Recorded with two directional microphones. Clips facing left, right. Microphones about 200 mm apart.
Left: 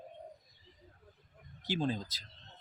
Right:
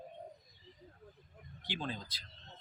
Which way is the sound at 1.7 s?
40° left (ahead or behind).